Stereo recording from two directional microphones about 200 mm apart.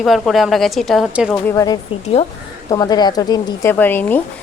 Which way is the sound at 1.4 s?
15° left (ahead or behind).